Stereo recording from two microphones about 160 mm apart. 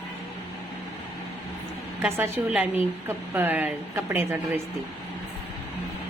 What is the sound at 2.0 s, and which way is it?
A woman's voice, 15° right (ahead or behind).